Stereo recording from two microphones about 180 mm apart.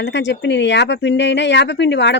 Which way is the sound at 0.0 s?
75° left (ahead or behind).